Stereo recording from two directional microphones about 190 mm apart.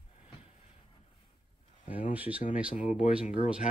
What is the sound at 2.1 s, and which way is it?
Speech, 10° right (ahead or behind).